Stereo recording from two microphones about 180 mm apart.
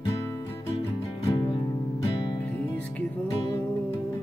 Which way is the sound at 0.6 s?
30° left (ahead or behind).